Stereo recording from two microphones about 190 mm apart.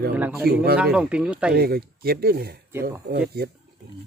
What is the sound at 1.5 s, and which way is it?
Speech, 50° right (ahead or behind).